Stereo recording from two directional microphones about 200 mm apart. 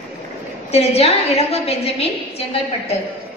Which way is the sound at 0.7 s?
30° left (ahead or behind).